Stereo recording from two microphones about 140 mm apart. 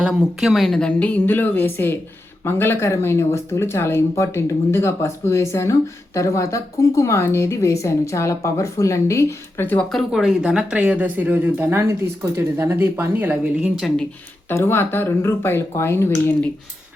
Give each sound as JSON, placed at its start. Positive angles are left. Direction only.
{"t": 0.0, "sound": "a woman's voice", "side_deg": -5}
{"t": 9.9, "sound": "speech", "side_deg": 0}
{"t": 14.5, "sound": "a woman's voice", "side_deg": 15}